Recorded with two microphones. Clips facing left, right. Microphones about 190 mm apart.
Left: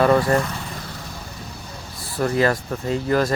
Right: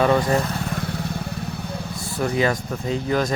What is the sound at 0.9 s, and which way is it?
Vehicle, 65° right (ahead or behind).